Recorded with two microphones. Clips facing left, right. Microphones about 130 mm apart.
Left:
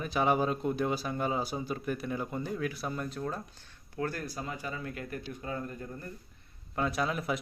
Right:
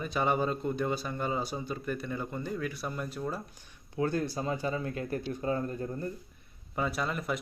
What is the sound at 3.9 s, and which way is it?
Speech, 20° right (ahead or behind).